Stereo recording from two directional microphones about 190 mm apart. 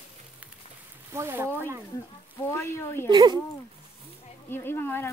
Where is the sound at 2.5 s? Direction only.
15° left (ahead or behind).